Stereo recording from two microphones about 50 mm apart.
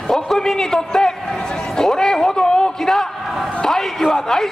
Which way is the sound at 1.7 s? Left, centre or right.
Centre.